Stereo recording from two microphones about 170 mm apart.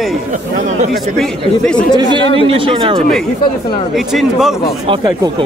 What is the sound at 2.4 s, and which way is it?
Speech, 30° right (ahead or behind).